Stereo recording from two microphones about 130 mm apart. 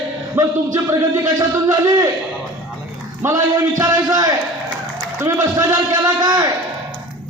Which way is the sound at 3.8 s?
30° right (ahead or behind).